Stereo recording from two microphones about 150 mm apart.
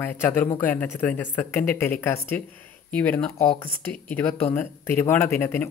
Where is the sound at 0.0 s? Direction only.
15° left (ahead or behind).